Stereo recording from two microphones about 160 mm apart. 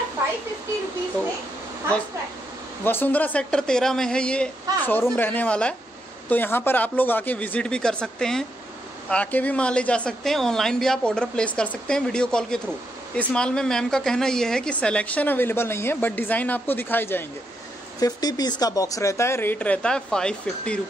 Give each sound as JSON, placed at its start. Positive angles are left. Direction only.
{"t": 2.8, "sound": "a woman's voice", "side_deg": 15}
{"t": 18.0, "sound": "a woman's voice", "side_deg": 25}